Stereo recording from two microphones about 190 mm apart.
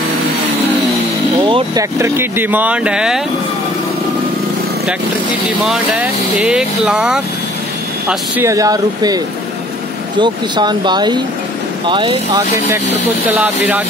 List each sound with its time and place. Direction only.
1.4 s speech: 20° right (ahead or behind); by 3.2 s 5° right (ahead or behind)
5.7 s speech: 5° right (ahead or behind); by 12.4 s 25° right (ahead or behind)